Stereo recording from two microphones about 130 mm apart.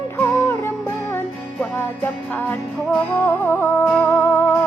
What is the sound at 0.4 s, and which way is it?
Music, 15° left (ahead or behind).